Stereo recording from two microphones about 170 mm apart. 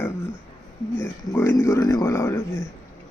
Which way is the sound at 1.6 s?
20° left (ahead or behind).